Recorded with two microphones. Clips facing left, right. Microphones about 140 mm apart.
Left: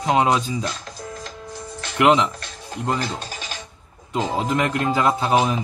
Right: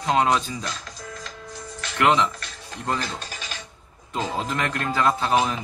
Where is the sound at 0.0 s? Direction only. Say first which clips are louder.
Left 2 dB; 20° left (ahead or behind).